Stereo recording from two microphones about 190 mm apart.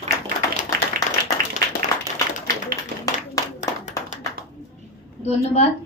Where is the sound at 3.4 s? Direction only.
20° left (ahead or behind).